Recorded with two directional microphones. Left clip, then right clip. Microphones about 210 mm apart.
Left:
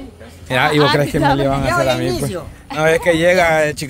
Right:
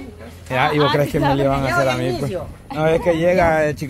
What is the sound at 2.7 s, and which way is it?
Speech, 25° left (ahead or behind).